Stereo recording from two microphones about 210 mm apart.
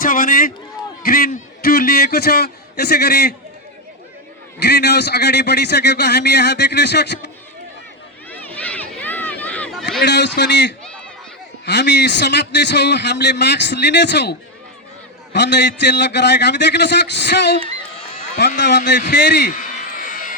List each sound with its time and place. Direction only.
0.0 s a man's voice: 40° left (ahead or behind)
4.6 s a man's voice: 50° left (ahead or behind)
8.3 s run: 5° left (ahead or behind)
10.0 s a man's voice: 55° left (ahead or behind)
19.0 s a man's voice: 55° left (ahead or behind)
19.5 s a sound: 40° left (ahead or behind)